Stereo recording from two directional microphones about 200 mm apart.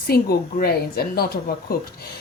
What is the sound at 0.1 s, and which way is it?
Speech, 50° left (ahead or behind).